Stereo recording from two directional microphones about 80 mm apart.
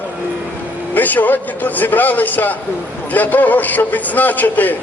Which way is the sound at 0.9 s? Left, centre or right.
Left.